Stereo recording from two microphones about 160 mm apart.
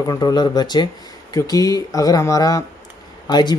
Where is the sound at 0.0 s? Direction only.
25° left (ahead or behind).